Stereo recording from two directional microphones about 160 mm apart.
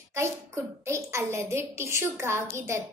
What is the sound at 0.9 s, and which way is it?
A woman's voice, 15° right (ahead or behind).